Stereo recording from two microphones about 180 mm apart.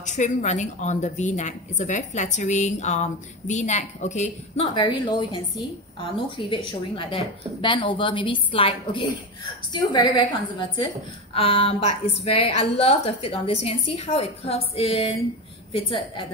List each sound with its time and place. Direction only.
0.0 s speech: 40° left (ahead or behind)
4.7 s a woman's voice: 25° left (ahead or behind)
11.3 s a woman's voice: 30° left (ahead or behind)